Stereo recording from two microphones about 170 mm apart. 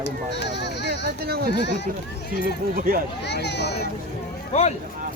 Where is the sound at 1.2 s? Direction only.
65° right (ahead or behind).